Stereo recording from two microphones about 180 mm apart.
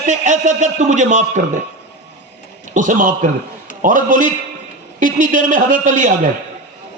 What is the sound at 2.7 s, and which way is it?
A man's voice, 45° right (ahead or behind).